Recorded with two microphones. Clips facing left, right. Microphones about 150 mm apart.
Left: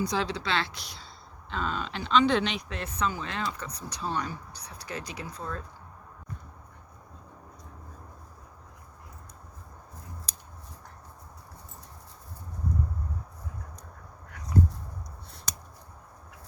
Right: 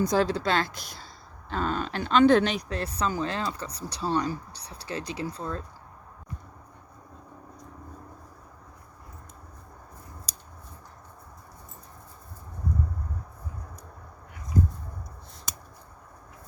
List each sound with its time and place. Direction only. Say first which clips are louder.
0.0 s speech: right 6 dB; 45° right (ahead or behind); by 5.6 s 30° right (ahead or behind)